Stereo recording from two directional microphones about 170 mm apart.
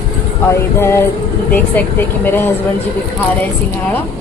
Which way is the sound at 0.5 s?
15° left (ahead or behind).